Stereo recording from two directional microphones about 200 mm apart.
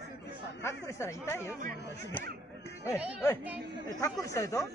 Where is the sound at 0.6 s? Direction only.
15° left (ahead or behind).